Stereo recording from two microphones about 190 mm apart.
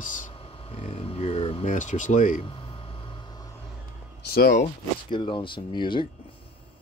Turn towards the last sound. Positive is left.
turn(degrees=25)  # may be behind; listen again after turning